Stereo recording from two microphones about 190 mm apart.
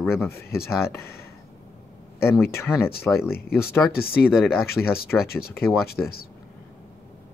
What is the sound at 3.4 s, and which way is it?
Speech, 55° left (ahead or behind).